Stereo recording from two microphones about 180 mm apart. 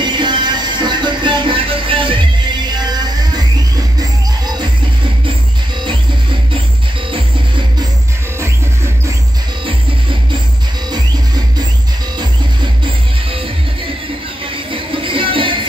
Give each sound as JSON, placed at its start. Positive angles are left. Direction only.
{"t": 0.0, "sound": "music", "side_deg": -25}
{"t": 14.7, "sound": "music", "side_deg": -30}